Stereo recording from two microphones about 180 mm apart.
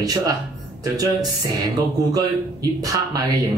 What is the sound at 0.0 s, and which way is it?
Speech, 20° right (ahead or behind).